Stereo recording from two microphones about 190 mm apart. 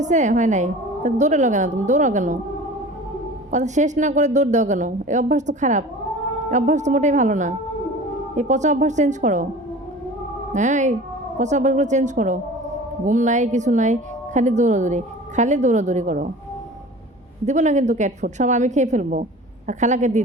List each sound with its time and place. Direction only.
0.0 s speech: 40° right (ahead or behind)
3.5 s speech: 40° right (ahead or behind)
10.5 s speech: 40° right (ahead or behind)
17.4 s speech: 40° right (ahead or behind)